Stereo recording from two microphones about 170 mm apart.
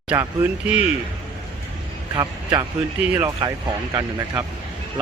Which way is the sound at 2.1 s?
20° right (ahead or behind).